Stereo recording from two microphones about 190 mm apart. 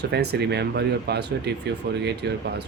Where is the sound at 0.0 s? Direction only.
60° right (ahead or behind).